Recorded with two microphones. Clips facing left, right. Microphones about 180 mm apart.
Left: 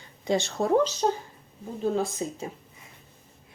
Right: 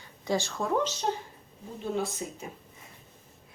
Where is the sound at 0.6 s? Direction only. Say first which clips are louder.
Left 6 dB; 40° left (ahead or behind).